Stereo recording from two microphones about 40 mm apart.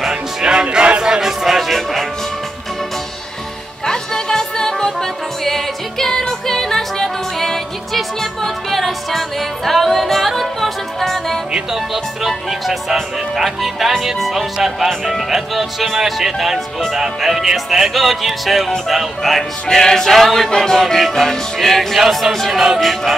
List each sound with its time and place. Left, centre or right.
0.1 s music: right
1.7 s music: centre
3.8 s music: centre
11.7 s speech: centre
16.9 s music: centre
18.9 s speech: centre
19.7 s music: centre
20.2 s speech: centre